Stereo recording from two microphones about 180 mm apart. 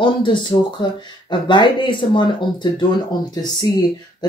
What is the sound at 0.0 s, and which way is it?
Speech, 25° left (ahead or behind).